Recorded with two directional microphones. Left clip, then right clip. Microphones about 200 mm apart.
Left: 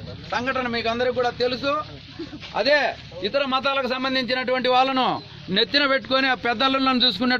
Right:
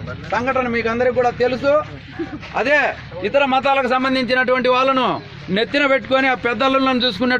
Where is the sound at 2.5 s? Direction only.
30° left (ahead or behind).